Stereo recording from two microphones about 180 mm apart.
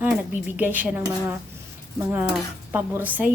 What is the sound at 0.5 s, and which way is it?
Speech, 10° right (ahead or behind).